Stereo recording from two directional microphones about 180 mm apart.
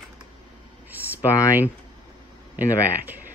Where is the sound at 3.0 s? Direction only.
10° right (ahead or behind).